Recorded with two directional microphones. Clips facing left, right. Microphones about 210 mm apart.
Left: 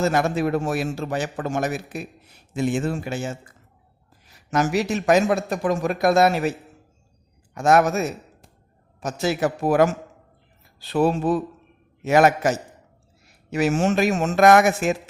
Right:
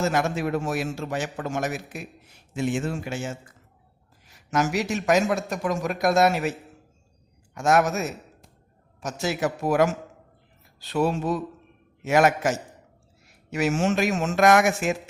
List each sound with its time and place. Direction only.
0.1 s a man's voice: 35° left (ahead or behind)
4.5 s a man's voice: 35° left (ahead or behind)
7.5 s a man's voice: 35° left (ahead or behind)
10.8 s a man's voice: 35° left (ahead or behind)